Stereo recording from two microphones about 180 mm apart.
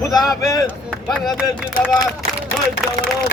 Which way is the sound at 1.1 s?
5° right (ahead or behind).